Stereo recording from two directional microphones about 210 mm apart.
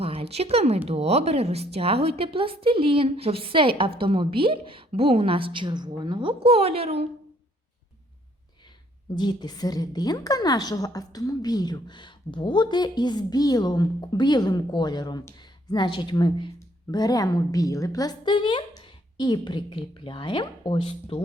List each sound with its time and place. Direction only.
0.0 s a woman's voice: 25° right (ahead or behind)
9.1 s a woman's voice: 20° left (ahead or behind)